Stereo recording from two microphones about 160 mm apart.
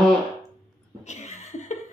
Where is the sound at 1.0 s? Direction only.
45° left (ahead or behind).